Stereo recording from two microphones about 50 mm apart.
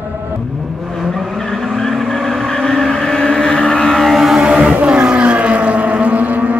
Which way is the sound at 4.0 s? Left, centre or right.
Centre.